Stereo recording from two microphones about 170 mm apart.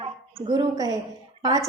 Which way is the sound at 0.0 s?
25° right (ahead or behind).